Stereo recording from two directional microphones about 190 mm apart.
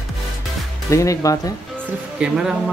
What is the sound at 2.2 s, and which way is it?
Speech, 5° right (ahead or behind).